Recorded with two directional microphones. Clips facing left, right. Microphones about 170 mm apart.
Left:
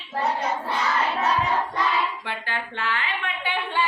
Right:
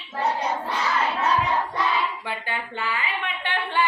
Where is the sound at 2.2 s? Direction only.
5° right (ahead or behind).